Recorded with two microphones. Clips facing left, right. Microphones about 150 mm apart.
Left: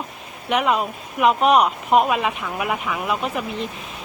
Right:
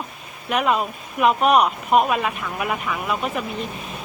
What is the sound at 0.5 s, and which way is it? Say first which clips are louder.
Speech: left 1 dB; centre (ahead or behind).